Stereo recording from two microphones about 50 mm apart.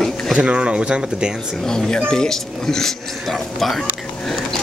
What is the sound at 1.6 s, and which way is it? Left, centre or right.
Speech, centre.